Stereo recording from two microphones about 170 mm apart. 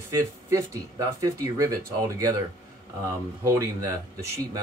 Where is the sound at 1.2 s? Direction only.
20° right (ahead or behind).